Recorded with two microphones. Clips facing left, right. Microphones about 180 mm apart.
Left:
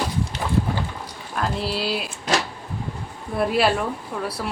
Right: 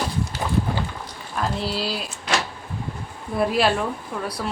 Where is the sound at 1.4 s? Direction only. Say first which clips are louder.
Even; centre (ahead or behind).